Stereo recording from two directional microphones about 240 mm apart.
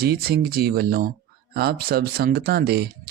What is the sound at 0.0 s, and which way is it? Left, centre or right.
Speech, right.